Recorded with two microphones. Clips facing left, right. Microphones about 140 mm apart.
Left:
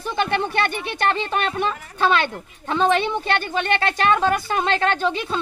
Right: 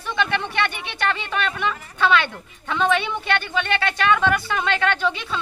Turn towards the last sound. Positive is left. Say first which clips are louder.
# left 2 dB
turn(degrees=40)  # may be behind; listen again after turning